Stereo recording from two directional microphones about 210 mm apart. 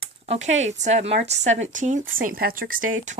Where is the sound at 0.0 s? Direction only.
30° right (ahead or behind).